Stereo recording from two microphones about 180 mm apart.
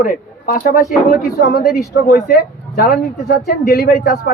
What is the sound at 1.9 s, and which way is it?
Speech, 60° left (ahead or behind).